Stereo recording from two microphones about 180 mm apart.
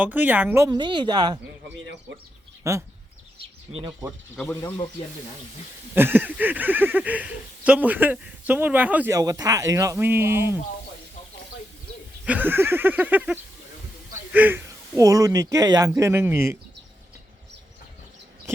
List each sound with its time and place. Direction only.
0.0 s speech: 10° right (ahead or behind)
2.1 s speech: 80° right
2.6 s speech: 15° right (ahead or behind)
5.9 s speech: 10° right (ahead or behind)
12.2 s speech: 10° right (ahead or behind)